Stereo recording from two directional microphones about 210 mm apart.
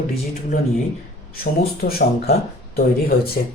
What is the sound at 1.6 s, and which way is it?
Speech, 45° left (ahead or behind).